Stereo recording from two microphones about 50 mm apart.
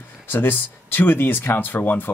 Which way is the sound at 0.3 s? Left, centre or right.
Left.